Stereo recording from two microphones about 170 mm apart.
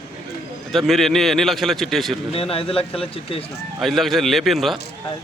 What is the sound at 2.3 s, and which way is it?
Speech, 35° left (ahead or behind).